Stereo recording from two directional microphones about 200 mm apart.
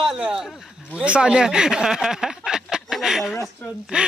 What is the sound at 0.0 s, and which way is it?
A man's voice, centre (ahead or behind).